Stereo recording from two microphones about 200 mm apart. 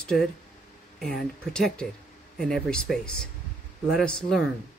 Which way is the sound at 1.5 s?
5° left (ahead or behind).